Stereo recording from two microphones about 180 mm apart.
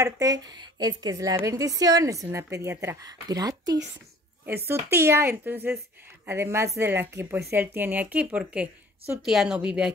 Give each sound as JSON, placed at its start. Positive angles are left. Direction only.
{"t": 0.0, "sound": "a woman's voice", "side_deg": -20}